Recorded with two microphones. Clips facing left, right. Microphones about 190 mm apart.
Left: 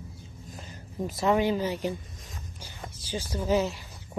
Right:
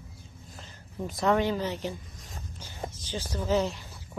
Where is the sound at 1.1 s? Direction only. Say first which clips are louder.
Left 1 dB; 5° left (ahead or behind).